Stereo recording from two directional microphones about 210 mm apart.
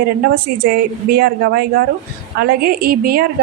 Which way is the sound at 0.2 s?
45° right (ahead or behind).